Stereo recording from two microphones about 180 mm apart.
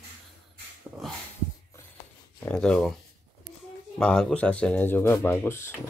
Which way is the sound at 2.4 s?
5° left (ahead or behind).